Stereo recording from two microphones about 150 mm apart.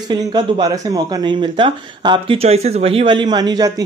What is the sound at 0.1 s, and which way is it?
Speech, 30° right (ahead or behind).